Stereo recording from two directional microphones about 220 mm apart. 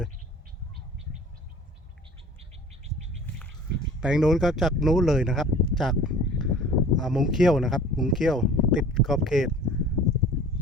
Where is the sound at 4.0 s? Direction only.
5° right (ahead or behind).